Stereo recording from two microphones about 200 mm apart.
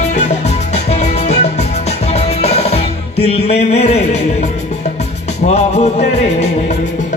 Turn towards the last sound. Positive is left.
turn(degrees=35)  # may be behind; listen again after turning